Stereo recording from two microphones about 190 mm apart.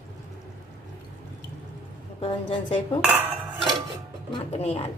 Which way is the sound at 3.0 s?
5° right (ahead or behind).